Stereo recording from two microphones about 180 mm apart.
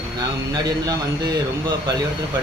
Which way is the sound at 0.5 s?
25° right (ahead or behind).